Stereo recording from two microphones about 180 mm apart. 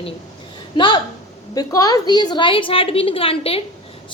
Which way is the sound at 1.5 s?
20° left (ahead or behind).